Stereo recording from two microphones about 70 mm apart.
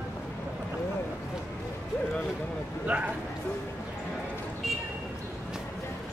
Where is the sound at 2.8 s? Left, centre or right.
Right.